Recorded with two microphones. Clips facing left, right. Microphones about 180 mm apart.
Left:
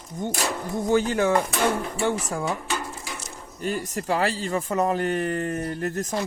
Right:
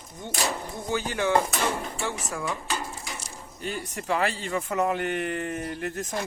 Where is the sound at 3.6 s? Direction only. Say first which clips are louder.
Left 4 dB; 40° left (ahead or behind).